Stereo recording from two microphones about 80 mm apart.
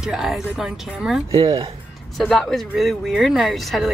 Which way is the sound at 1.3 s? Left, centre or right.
Right.